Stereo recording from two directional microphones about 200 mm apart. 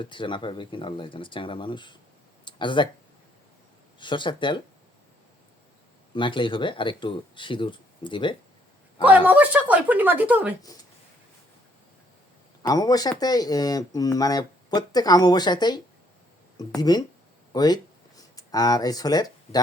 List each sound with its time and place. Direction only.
0.0 s speech: 25° left (ahead or behind)
4.0 s speech: 25° left (ahead or behind)
6.1 s speech: 25° left (ahead or behind)
9.0 s a woman's voice: 10° right (ahead or behind)
12.6 s speech: 20° left (ahead or behind)